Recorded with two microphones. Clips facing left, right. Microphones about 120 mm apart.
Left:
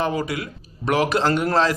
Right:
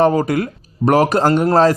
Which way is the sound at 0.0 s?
40° right (ahead or behind).